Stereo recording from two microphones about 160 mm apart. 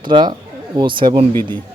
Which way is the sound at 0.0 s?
30° right (ahead or behind).